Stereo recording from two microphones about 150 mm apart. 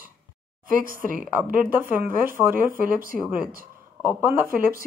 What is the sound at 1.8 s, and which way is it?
Speech, 15° right (ahead or behind).